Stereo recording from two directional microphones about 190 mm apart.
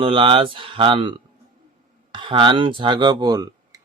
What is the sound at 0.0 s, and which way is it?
Speech, 30° right (ahead or behind).